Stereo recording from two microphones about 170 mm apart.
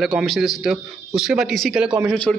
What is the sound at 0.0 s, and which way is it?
A man's voice, centre (ahead or behind).